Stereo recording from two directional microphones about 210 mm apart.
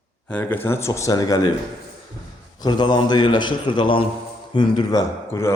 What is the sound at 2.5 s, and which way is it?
A man's voice, 20° left (ahead or behind).